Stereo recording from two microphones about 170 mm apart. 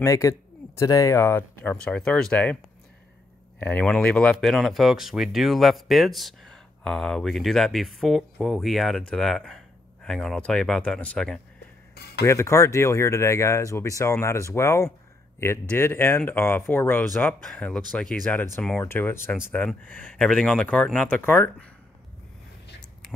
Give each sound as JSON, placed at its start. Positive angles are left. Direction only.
{"t": 0.0, "sound": "speech", "side_deg": 20}
{"t": 11.9, "sound": "a sound", "side_deg": 75}
{"t": 12.3, "sound": "speech", "side_deg": 15}